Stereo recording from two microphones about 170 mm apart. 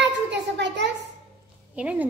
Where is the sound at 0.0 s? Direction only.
90° right.